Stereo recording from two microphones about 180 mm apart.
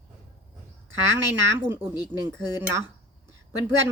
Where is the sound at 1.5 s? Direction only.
10° right (ahead or behind).